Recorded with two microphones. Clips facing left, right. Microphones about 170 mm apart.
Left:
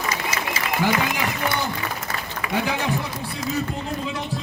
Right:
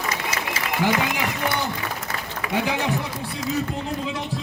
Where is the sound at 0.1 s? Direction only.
60° right (ahead or behind).